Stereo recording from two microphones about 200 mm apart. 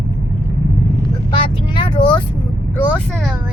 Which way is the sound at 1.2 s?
25° left (ahead or behind).